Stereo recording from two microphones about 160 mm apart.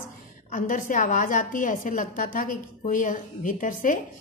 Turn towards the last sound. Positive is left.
turn(degrees=55)  # may be behind; listen again after turning